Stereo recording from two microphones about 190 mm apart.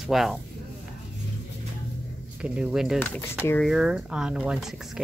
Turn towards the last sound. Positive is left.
turn(degrees=0)  # may be behind; listen again after turning